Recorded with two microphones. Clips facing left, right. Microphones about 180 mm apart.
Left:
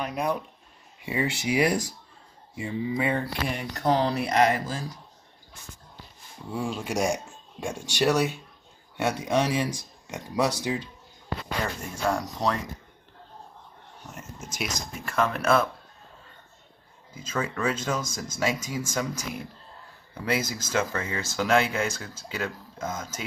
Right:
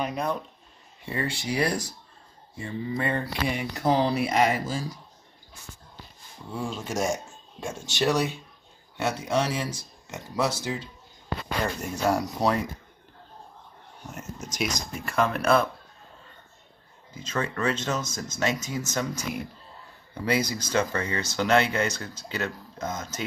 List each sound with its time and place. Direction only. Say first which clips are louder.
0.1 s speech: left 1 dB; 10° left (ahead or behind)
6.5 s speech: left 2 dB; 10° left (ahead or behind)
12.1 s speech: right 2 dB; 5° right (ahead or behind)
14.0 s speech: right 3 dB; centre (ahead or behind)
17.1 s speech: even; 5° left (ahead or behind)
20.2 s speech: right 2 dB; 5° left (ahead or behind)